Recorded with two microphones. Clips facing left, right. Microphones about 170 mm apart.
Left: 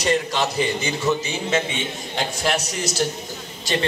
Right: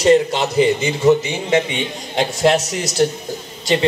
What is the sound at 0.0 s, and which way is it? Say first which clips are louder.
A man's voice: right 8 dB; 25° right (ahead or behind).